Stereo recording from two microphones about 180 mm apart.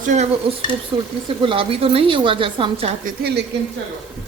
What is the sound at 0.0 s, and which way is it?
Speech, 45° right (ahead or behind).